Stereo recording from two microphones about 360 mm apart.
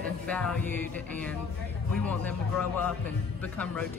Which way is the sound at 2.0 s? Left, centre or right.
Centre.